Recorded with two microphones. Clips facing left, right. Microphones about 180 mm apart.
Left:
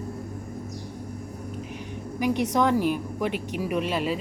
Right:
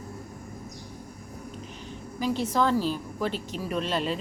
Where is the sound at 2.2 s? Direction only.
15° left (ahead or behind).